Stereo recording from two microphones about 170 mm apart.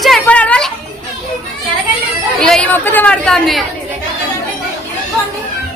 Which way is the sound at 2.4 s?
5° left (ahead or behind).